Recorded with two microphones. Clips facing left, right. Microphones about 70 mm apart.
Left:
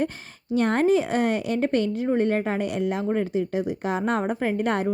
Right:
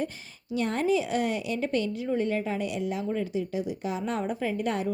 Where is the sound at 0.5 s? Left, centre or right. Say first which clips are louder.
Left 6 dB; left.